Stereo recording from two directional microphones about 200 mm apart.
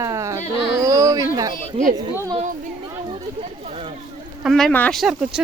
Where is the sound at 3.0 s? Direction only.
25° right (ahead or behind).